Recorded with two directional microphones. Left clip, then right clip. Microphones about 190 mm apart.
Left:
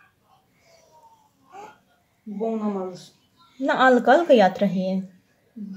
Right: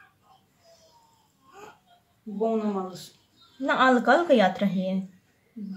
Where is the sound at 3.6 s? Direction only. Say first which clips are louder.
Left 4 dB; 25° left (ahead or behind).